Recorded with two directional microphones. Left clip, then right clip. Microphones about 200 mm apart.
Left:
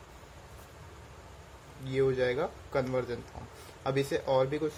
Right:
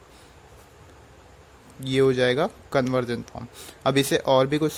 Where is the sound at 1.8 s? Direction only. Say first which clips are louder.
Right 8 dB; 50° right (ahead or behind).